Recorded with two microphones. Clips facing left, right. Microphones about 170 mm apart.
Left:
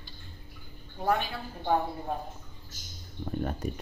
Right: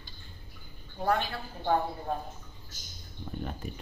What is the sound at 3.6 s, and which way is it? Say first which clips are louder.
Speech: left 6 dB; 45° left (ahead or behind).